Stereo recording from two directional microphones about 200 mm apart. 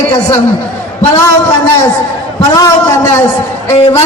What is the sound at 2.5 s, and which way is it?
Speech, 15° left (ahead or behind).